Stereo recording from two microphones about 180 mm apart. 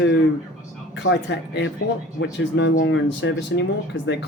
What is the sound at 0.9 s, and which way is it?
Speech, 80° left.